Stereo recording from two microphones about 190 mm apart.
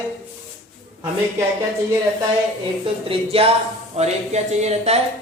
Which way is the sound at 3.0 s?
30° right (ahead or behind).